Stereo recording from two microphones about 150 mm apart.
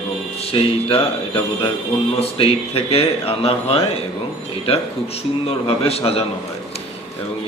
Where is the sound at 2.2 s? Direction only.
40° left (ahead or behind).